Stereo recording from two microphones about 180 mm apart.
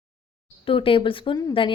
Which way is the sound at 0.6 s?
30° left (ahead or behind).